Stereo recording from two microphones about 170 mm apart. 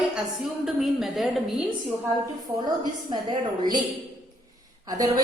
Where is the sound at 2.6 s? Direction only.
25° right (ahead or behind).